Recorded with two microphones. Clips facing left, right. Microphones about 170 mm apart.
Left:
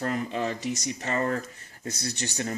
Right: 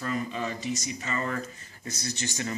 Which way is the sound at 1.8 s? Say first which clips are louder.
Left 1 dB; 60° left (ahead or behind).